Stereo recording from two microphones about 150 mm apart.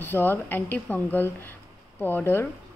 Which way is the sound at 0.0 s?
15° left (ahead or behind).